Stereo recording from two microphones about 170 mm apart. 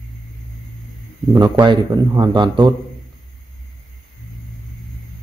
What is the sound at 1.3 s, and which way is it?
A man's voice, 25° right (ahead or behind).